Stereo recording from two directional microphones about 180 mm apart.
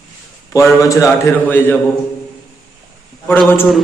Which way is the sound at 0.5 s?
20° left (ahead or behind).